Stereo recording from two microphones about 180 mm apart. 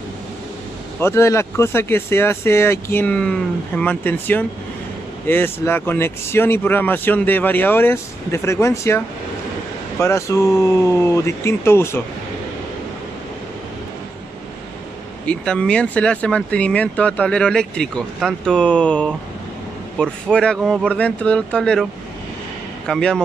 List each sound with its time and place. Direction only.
0.9 s speech: 15° left (ahead or behind)
15.2 s speech: 5° left (ahead or behind)
22.8 s speech: 5° left (ahead or behind)